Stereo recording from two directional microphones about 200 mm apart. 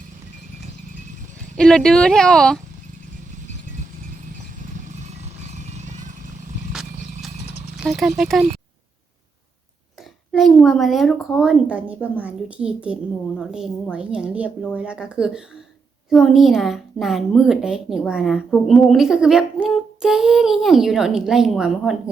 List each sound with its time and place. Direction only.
1.5 s a woman's voice: centre (ahead or behind)
4.9 s vehicle: 35° right (ahead or behind)
7.8 s a woman's voice: centre (ahead or behind)
10.3 s a woman's voice: centre (ahead or behind)